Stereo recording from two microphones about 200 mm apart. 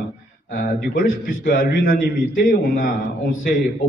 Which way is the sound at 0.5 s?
45° left (ahead or behind).